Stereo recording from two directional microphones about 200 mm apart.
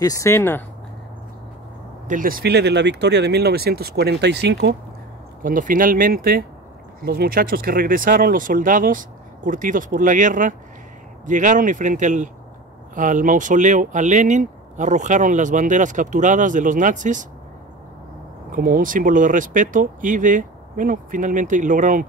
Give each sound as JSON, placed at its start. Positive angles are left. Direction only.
{"t": 0.0, "sound": "speech", "side_deg": 15}
{"t": 2.0, "sound": "speech", "side_deg": -40}
{"t": 5.4, "sound": "speech", "side_deg": -45}
{"t": 18.5, "sound": "speech", "side_deg": -45}